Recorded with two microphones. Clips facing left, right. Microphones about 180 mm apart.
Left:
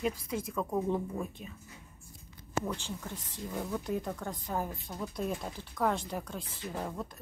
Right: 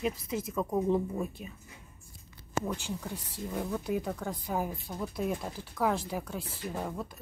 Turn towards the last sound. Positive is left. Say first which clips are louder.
# right 1 dB
turn(degrees=-5)  # may be behind; listen again after turning